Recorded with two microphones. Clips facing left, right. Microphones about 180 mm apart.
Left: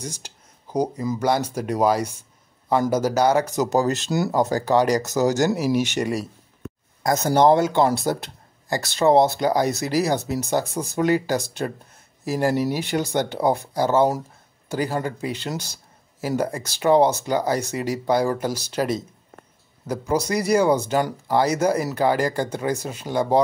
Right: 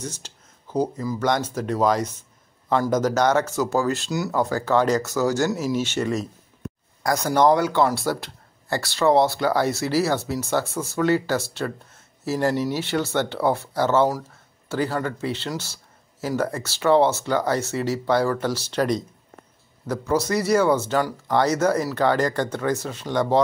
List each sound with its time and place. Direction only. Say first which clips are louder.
0.0 s speech: even; 10° left (ahead or behind)
4.3 s speech: left 1 dB; 40° left (ahead or behind)
4.6 s speech: even; 15° left (ahead or behind)